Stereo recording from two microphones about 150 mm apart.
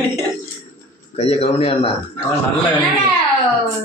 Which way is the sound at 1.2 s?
40° left (ahead or behind).